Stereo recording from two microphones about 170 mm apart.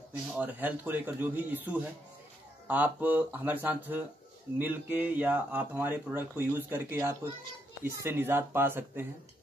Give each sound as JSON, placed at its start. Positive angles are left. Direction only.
{"t": 0.3, "sound": "speech", "side_deg": -10}